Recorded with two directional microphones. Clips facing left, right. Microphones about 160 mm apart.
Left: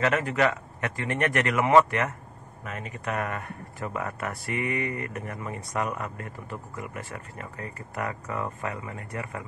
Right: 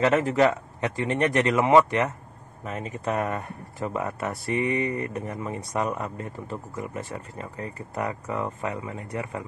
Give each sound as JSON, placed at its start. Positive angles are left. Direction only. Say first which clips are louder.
{"t": 0.0, "sound": "speech", "louder": "right 4 dB", "side_deg": -25}